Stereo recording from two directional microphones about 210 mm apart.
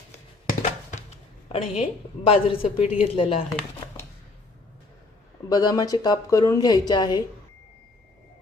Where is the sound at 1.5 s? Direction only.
30° left (ahead or behind).